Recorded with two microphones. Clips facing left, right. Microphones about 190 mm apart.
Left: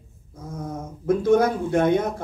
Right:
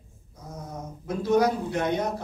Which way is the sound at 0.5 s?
50° left (ahead or behind).